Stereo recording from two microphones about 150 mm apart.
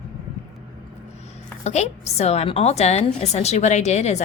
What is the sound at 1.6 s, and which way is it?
A woman's voice, 45° left (ahead or behind).